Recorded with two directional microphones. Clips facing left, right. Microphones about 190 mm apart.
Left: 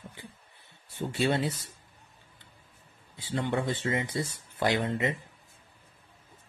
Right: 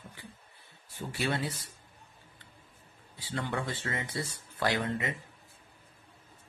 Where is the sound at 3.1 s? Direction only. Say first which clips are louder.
Left 5 dB; 20° left (ahead or behind).